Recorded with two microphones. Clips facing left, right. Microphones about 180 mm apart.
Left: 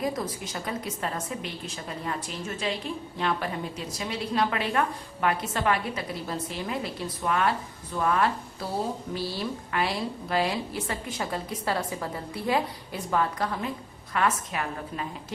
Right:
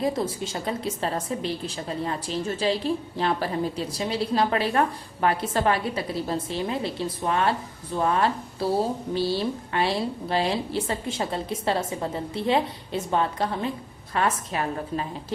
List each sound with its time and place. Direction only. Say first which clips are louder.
0.0 s a woman's voice: right 4 dB; 25° right (ahead or behind)